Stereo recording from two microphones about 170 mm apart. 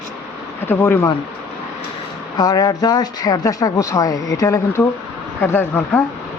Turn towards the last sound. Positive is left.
turn(degrees=10)  # may be behind; listen again after turning